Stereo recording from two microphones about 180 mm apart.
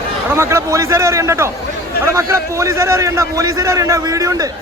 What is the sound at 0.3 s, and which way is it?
A man's voice, 15° right (ahead or behind).